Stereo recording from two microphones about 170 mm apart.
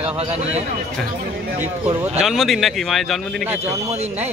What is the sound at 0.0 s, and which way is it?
Speech, 40° right (ahead or behind).